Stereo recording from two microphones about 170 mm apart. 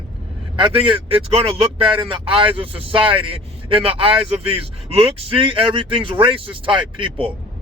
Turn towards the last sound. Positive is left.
turn(degrees=-30)  # may be behind; listen again after turning